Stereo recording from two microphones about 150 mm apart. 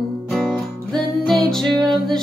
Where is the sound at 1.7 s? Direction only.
30° right (ahead or behind).